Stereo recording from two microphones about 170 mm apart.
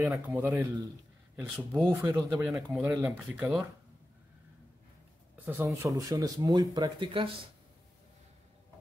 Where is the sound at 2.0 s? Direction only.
15° right (ahead or behind).